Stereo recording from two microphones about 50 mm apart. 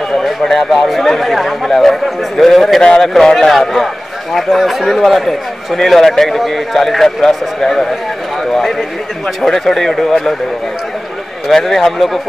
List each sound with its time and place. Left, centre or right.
0.2 s a man's voice: centre
2.8 s speech: centre
3.1 s a man's voice: centre
11.4 s a man's voice: centre